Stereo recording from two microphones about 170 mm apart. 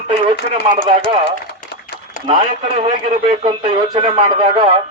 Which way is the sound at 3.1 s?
45° right (ahead or behind).